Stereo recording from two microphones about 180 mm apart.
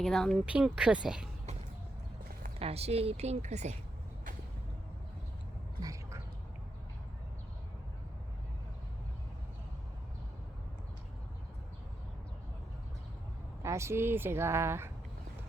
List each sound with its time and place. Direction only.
0.0 s speech: centre (ahead or behind)
2.6 s a woman's voice: 35° right (ahead or behind)
5.8 s a sound: 15° right (ahead or behind)
13.6 s speech: 15° right (ahead or behind)